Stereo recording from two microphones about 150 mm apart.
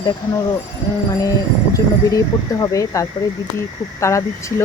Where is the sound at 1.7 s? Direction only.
20° left (ahead or behind).